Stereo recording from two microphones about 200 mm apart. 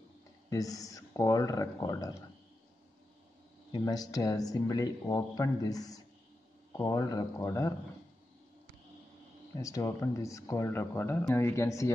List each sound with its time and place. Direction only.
0.5 s speech: 15° left (ahead or behind)
3.7 s speech: 20° left (ahead or behind)
9.6 s speech: 15° left (ahead or behind)